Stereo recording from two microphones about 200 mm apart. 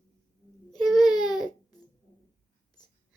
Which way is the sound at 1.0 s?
20° left (ahead or behind).